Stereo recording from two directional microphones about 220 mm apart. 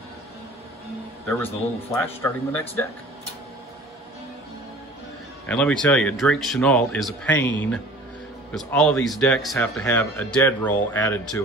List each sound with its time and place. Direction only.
1.2 s a man's voice: 10° left (ahead or behind)
5.5 s speech: 5° left (ahead or behind)